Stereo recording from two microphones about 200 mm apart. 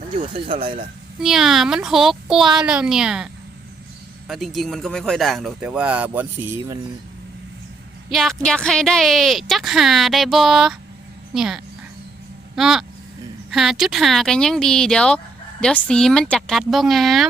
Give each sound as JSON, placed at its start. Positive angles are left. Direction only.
{"t": 0.4, "sound": "speech", "side_deg": -25}
{"t": 1.2, "sound": "speech", "side_deg": 0}
{"t": 4.3, "sound": "speech", "side_deg": 0}
{"t": 8.1, "sound": "speech", "side_deg": 0}